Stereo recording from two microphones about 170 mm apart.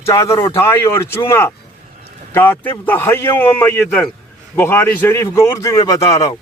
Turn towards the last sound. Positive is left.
turn(degrees=20)  # may be behind; listen again after turning